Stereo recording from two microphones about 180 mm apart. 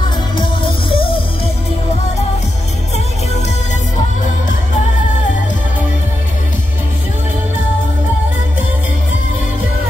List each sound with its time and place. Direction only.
0.4 s music: 30° left (ahead or behind)